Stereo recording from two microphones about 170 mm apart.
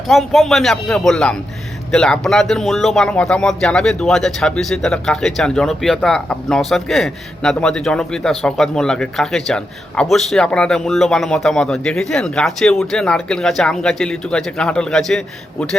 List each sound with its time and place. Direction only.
0.1 s speech: centre (ahead or behind)